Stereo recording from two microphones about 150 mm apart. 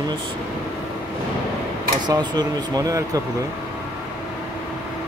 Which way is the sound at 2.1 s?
25° right (ahead or behind).